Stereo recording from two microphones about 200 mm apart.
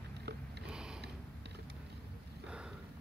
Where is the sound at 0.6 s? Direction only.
5° right (ahead or behind).